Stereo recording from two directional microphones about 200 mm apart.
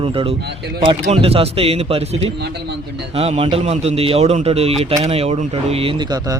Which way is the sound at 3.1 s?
30° right (ahead or behind).